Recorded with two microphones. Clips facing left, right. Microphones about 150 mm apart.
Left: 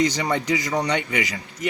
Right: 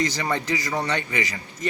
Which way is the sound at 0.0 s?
15° left (ahead or behind).